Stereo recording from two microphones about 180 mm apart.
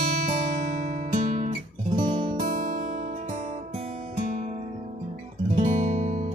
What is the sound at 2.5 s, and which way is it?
Music, 50° right (ahead or behind).